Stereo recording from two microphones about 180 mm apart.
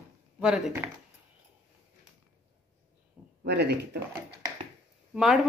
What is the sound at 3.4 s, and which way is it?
Speech, 70° right (ahead or behind).